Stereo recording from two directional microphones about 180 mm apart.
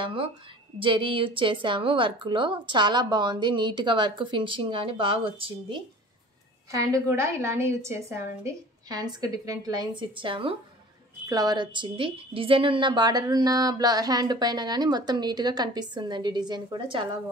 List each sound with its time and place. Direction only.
0.0 s a woman's voice: 30° right (ahead or behind)
6.7 s a woman's voice: 15° right (ahead or behind)